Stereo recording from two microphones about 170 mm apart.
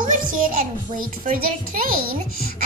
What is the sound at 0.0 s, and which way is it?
Music, 50° right (ahead or behind).